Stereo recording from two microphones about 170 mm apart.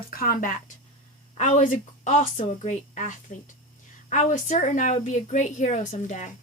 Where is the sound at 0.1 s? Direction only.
60° left (ahead or behind).